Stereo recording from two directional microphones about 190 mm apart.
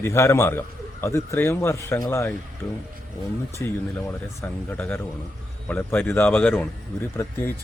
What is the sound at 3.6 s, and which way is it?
A man's voice, 10° left (ahead or behind).